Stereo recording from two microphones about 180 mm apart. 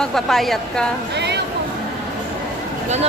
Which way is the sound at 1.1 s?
70° right (ahead or behind).